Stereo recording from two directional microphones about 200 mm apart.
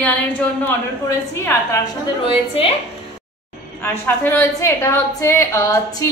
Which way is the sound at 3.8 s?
10° left (ahead or behind).